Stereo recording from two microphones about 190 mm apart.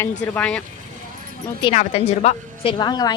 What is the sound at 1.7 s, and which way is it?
A woman's voice, 35° left (ahead or behind).